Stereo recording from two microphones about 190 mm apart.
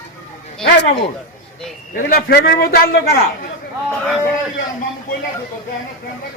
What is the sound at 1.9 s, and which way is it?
A man's voice, 55° left (ahead or behind).